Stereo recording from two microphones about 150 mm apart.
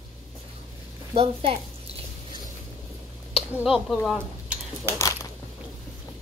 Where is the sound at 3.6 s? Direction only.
Centre (ahead or behind).